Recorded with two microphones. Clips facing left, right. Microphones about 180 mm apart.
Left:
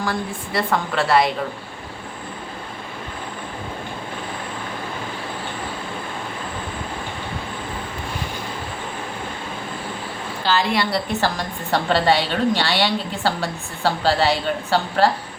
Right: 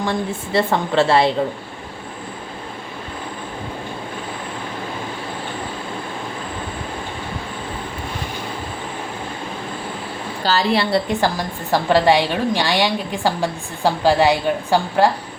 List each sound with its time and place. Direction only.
0.0 s a woman's voice: 25° right (ahead or behind)
10.4 s a woman's voice: 35° right (ahead or behind)
11.7 s a woman's voice: 10° right (ahead or behind)